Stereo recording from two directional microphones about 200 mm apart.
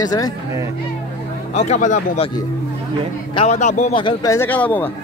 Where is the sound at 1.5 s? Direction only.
35° left (ahead or behind).